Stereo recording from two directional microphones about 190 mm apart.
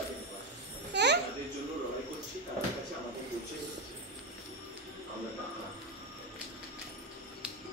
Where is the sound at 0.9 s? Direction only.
65° right (ahead or behind).